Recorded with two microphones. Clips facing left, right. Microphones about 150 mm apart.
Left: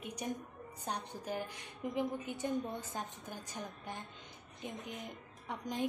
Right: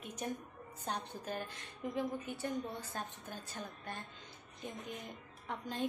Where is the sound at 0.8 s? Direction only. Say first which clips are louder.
Even; 15° left (ahead or behind).